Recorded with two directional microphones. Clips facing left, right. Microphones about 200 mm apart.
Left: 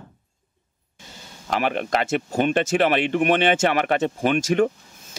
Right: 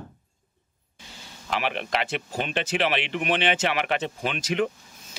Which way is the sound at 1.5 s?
45° left (ahead or behind).